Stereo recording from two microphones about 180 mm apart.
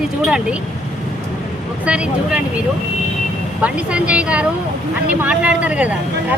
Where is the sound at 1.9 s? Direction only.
5° right (ahead or behind).